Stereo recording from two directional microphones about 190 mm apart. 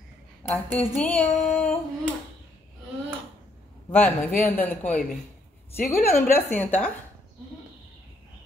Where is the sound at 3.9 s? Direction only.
10° left (ahead or behind).